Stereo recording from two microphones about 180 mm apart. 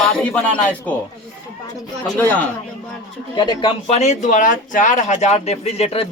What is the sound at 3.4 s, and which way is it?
Speech, 25° left (ahead or behind).